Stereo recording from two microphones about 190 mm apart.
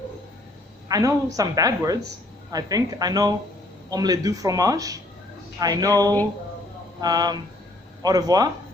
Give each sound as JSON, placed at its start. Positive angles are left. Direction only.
{"t": 0.9, "sound": "a woman's voice", "side_deg": -20}